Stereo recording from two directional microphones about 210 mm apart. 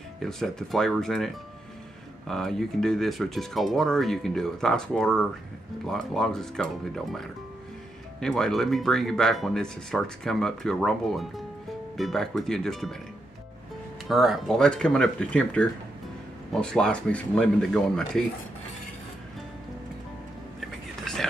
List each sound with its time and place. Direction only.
0.2 s speech: centre (ahead or behind)
14.0 s speech: centre (ahead or behind)
21.0 s whispering: centre (ahead or behind)